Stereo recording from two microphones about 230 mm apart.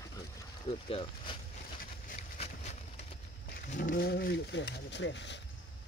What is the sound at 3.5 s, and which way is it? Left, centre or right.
Speech, left.